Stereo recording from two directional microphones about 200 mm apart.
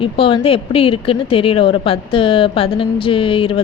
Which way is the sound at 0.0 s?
25° left (ahead or behind).